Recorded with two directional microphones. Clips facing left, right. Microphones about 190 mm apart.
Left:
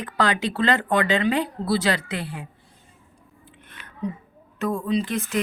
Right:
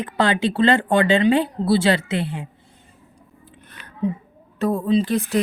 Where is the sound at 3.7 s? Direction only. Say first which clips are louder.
Right 6 dB; 35° right (ahead or behind).